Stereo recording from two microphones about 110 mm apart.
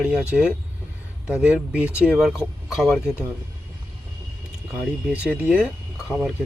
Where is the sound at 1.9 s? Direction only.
15° left (ahead or behind).